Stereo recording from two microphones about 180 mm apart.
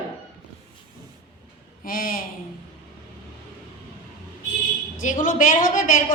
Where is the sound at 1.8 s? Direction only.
50° left (ahead or behind).